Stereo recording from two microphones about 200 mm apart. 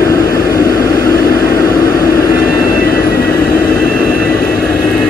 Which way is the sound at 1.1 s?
50° left (ahead or behind).